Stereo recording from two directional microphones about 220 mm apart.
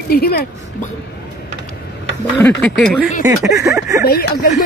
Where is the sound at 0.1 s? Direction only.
45° left (ahead or behind).